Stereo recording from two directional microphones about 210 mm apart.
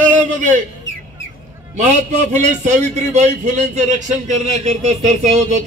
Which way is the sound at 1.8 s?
35° right (ahead or behind).